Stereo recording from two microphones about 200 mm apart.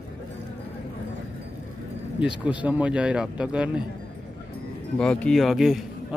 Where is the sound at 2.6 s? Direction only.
5° right (ahead or behind).